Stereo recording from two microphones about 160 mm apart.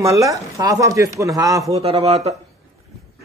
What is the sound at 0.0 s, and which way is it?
Speech, 20° right (ahead or behind).